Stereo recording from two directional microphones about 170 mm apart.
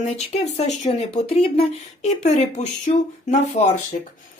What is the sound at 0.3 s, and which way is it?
Speech, 40° left (ahead or behind).